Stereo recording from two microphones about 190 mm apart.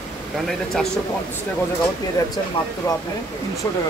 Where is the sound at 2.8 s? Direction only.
15° left (ahead or behind).